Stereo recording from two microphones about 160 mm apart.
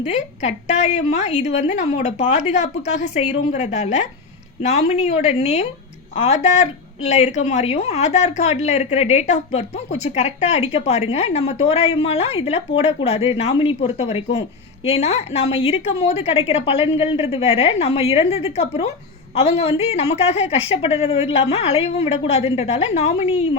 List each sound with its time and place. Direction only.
0.0 s a woman's voice: 45° left (ahead or behind)